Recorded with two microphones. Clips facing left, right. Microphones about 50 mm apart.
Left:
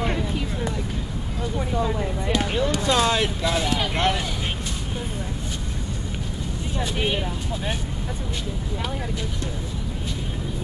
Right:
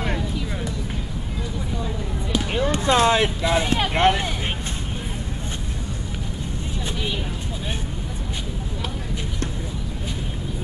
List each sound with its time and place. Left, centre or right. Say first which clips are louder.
1.8 s a sound: left 4 dB; left
2.6 s speech: right 5 dB; right
3.6 s speech: right 2 dB; right
3.9 s speech: right 4 dB; right